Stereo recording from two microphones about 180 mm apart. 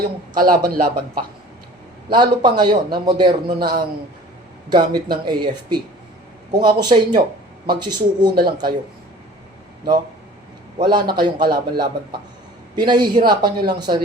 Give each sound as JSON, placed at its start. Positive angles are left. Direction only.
{"t": 0.3, "sound": "speech", "side_deg": -50}
{"t": 2.1, "sound": "a man's voice", "side_deg": -25}
{"t": 10.8, "sound": "a man's voice", "side_deg": -25}
{"t": 11.5, "sound": "a man's voice", "side_deg": -60}
{"t": 12.7, "sound": "a man's voice", "side_deg": -25}